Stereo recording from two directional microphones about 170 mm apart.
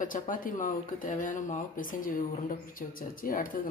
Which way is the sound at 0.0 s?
50° left (ahead or behind).